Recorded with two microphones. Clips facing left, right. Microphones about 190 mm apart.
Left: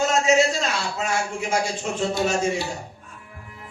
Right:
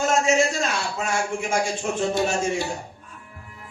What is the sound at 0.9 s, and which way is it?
Speech, 50° right (ahead or behind).